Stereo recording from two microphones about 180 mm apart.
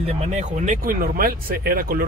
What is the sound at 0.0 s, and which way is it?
Speech, 35° right (ahead or behind).